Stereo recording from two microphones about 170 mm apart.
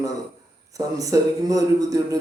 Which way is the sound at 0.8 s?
20° right (ahead or behind).